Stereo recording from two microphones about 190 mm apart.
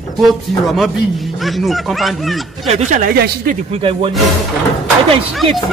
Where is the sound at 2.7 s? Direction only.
40° right (ahead or behind).